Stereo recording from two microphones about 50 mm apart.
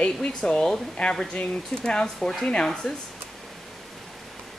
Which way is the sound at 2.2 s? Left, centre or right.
Centre.